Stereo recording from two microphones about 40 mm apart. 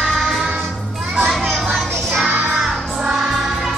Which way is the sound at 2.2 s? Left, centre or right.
Right.